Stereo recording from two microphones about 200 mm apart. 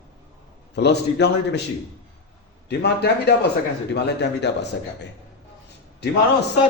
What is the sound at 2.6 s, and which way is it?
Speech, 55° left (ahead or behind).